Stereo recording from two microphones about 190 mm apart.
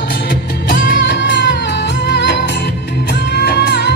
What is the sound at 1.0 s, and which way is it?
Music, 65° left (ahead or behind).